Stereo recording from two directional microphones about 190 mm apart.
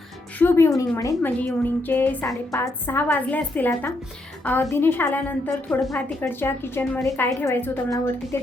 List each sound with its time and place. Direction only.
0.3 s a woman's voice: 10° left (ahead or behind)